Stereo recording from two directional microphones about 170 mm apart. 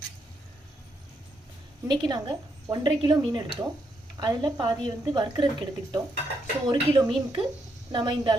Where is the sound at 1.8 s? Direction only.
25° right (ahead or behind).